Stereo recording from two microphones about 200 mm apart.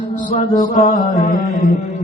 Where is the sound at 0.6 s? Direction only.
40° left (ahead or behind).